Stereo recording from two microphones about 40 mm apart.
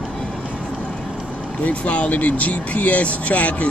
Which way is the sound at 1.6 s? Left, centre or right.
Left.